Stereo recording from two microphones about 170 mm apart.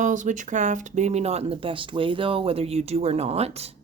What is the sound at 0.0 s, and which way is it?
Speech, 45° right (ahead or behind).